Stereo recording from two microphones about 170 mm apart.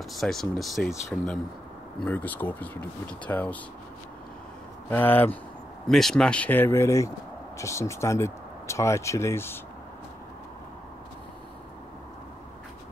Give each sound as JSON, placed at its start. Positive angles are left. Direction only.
{"t": 0.1, "sound": "speech", "side_deg": 0}
{"t": 4.8, "sound": "speech", "side_deg": 10}